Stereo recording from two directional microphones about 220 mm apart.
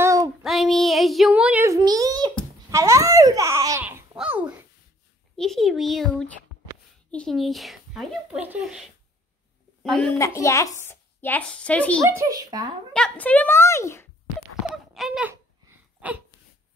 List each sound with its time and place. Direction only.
0.0 s child singing: 15° right (ahead or behind)
0.4 s child singing: centre (ahead or behind); by 2.3 s 15° right (ahead or behind)
2.7 s babbling: 15° right (ahead or behind)
5.3 s a child's voice: centre (ahead or behind)
9.8 s a child's voice: centre (ahead or behind)
10.1 s a woman's voice: 15° left (ahead or behind)
12.0 s speech: 15° right (ahead or behind)
12.9 s a woman's voice: 5° left (ahead or behind)
15.0 s a sound: 5° right (ahead or behind)